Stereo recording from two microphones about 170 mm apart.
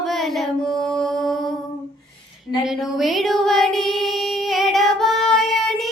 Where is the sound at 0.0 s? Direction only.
Centre (ahead or behind).